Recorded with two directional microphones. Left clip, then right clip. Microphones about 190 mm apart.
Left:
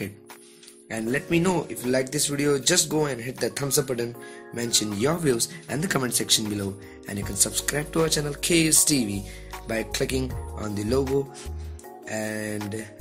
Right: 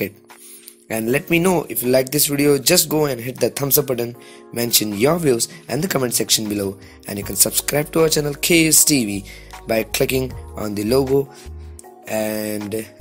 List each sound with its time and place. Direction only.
0.8 s speech: 40° right (ahead or behind)
12.1 s speech: 40° right (ahead or behind)